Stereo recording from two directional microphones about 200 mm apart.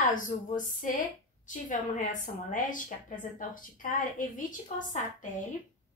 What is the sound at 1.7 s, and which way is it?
A woman's voice, 40° left (ahead or behind).